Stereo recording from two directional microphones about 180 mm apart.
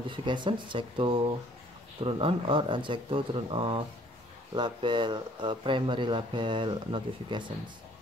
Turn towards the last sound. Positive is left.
turn(degrees=-25)  # may be behind; listen again after turning